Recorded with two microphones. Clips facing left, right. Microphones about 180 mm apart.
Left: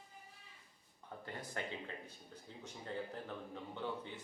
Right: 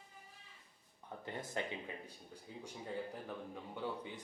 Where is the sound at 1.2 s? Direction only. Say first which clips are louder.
Right 3 dB; 20° right (ahead or behind).